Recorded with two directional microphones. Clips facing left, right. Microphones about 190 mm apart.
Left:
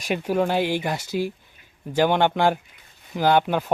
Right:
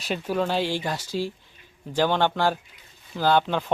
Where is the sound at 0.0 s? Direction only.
10° left (ahead or behind).